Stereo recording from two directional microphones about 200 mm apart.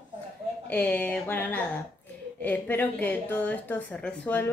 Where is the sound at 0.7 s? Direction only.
5° left (ahead or behind).